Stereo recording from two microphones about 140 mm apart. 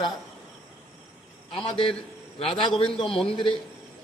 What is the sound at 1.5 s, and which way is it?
A man's voice, 40° left (ahead or behind).